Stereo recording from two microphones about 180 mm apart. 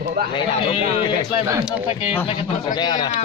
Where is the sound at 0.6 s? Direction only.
30° left (ahead or behind).